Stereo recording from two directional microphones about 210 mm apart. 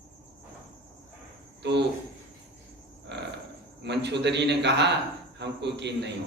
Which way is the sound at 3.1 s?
55° right (ahead or behind).